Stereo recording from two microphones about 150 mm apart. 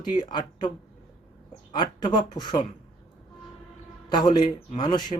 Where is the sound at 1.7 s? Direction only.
30° left (ahead or behind).